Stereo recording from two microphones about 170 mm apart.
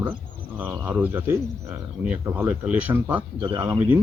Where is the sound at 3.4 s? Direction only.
20° right (ahead or behind).